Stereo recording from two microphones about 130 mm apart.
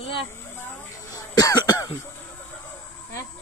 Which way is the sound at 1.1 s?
30° left (ahead or behind).